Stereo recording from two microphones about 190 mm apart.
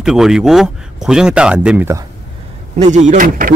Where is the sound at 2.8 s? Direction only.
40° right (ahead or behind).